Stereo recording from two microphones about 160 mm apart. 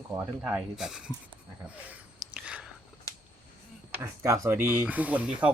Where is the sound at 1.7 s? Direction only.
10° right (ahead or behind).